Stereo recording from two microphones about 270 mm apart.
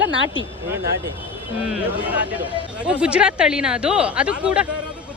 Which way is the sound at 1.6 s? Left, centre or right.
Centre.